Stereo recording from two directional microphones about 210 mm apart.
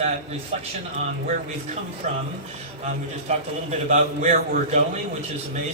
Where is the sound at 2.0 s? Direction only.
35° right (ahead or behind).